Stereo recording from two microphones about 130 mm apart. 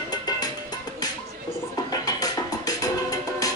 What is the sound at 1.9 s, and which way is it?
Music, 30° left (ahead or behind).